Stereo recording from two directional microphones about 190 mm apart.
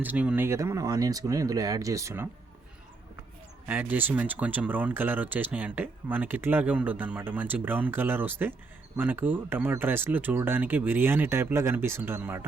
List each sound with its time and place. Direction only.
0.0 s speech: 10° right (ahead or behind)
3.7 s speech: 10° right (ahead or behind)